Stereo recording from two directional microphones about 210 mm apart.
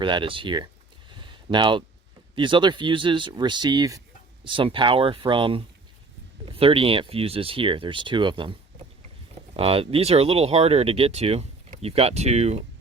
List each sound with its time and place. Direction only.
0.0 s speech: 25° right (ahead or behind)
1.1 s a sound: 25° right (ahead or behind)
2.3 s speech: 25° right (ahead or behind)
9.6 s speech: 25° right (ahead or behind)